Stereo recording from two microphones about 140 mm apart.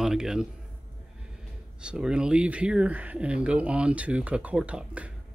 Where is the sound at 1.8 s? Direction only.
5° right (ahead or behind).